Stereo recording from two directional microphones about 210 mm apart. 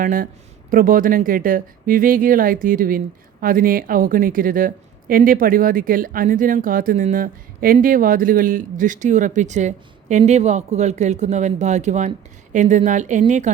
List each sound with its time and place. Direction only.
0.0 s a woman's voice: 40° right (ahead or behind)